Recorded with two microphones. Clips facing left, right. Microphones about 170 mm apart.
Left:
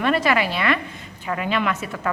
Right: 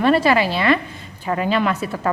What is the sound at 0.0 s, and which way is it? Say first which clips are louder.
A woman's voice: right 4 dB; 30° right (ahead or behind).